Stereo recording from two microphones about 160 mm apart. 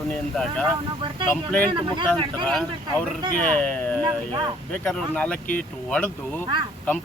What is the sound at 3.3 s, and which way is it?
Speech, 10° left (ahead or behind).